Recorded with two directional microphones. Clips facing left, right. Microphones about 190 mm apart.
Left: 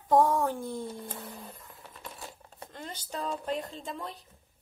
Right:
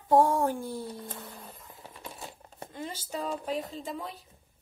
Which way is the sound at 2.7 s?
5° right (ahead or behind).